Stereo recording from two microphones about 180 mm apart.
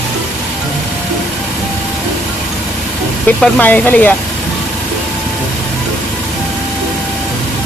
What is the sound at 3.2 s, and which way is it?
Speech, 10° left (ahead or behind).